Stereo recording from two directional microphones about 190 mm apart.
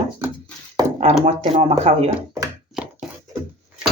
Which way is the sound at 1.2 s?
35° right (ahead or behind).